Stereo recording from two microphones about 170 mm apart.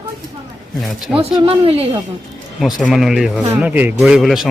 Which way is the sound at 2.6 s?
Centre (ahead or behind).